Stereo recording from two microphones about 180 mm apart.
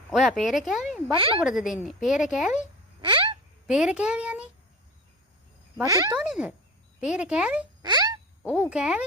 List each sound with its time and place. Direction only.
0.1 s speech: centre (ahead or behind)
1.1 s speech: 30° right (ahead or behind)
1.4 s speech: 5° right (ahead or behind)
3.0 s a sound: 30° right (ahead or behind)
3.7 s speech: 5° right (ahead or behind)
5.8 s speech: 20° right (ahead or behind)
6.1 s speech: 5° right (ahead or behind)
7.8 s a sound: 20° right (ahead or behind)
8.5 s speech: 5° right (ahead or behind)